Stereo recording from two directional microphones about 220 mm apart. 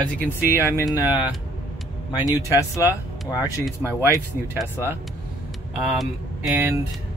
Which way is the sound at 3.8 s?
10° right (ahead or behind).